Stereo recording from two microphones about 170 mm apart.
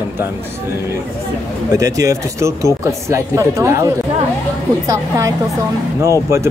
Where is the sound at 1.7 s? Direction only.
20° right (ahead or behind).